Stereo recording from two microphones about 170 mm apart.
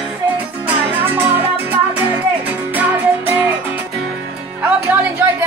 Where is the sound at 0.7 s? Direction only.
10° right (ahead or behind).